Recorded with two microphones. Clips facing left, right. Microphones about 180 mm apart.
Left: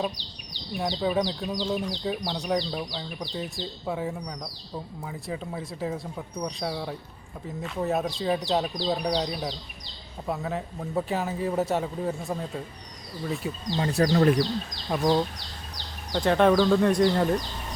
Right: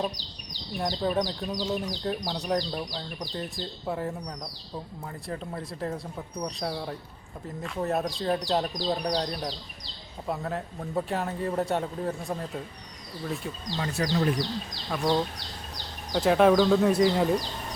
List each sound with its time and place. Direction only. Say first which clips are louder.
0.8 s speech: left 1 dB; centre (ahead or behind)
13.7 s speech: left 5 dB; 30° left (ahead or behind)
14.0 s speech: left 6 dB; 55° left (ahead or behind)
14.9 s speech: left 4 dB; 25° left (ahead or behind)
16.1 s speech: even; 5° right (ahead or behind)